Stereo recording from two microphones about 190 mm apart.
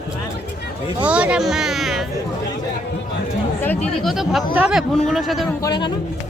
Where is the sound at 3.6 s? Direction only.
10° left (ahead or behind).